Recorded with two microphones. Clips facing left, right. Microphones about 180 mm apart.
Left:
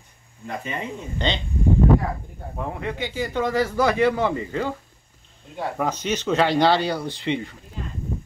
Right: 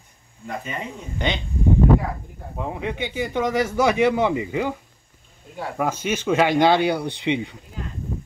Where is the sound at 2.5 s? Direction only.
15° right (ahead or behind).